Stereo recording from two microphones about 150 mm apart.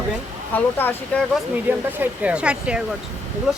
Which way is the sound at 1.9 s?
10° right (ahead or behind).